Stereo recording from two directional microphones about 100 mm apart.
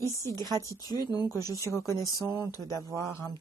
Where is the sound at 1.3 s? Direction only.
35° left (ahead or behind).